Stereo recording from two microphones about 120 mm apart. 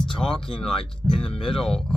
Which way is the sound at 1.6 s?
5° left (ahead or behind).